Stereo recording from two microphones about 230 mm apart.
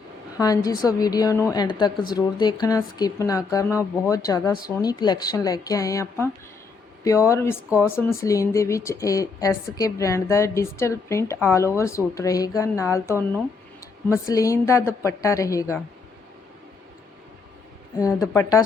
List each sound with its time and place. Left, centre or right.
0.3 s a woman's voice: centre
18.3 s a woman's voice: centre